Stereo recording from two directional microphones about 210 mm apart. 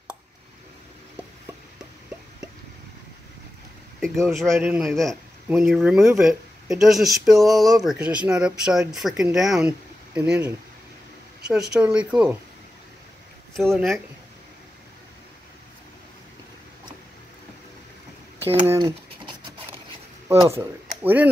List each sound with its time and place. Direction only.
4.0 s speech: centre (ahead or behind)
13.6 s speech: centre (ahead or behind)
18.7 s a sound: 15° right (ahead or behind)
20.3 s speech: 15° right (ahead or behind)